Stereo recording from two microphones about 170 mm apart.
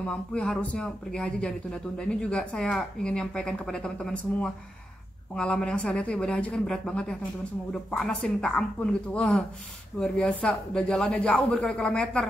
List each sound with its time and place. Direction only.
0.0 s speech: 5° left (ahead or behind)